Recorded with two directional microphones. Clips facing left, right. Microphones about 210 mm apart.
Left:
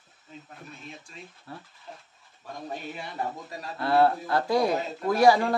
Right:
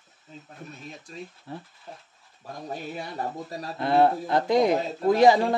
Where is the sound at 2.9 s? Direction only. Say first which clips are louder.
Right 1 dB; 40° right (ahead or behind).